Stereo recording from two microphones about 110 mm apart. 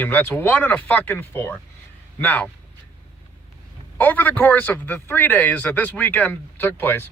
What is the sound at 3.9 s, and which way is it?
Speech, 15° left (ahead or behind).